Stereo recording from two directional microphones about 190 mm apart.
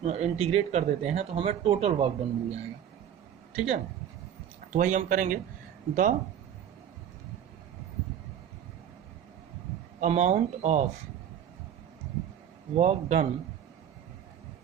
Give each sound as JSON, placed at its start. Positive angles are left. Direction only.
{"t": 0.0, "sound": "speech", "side_deg": -35}
{"t": 4.7, "sound": "speech", "side_deg": -40}
{"t": 10.0, "sound": "speech", "side_deg": -40}
{"t": 12.7, "sound": "speech", "side_deg": -35}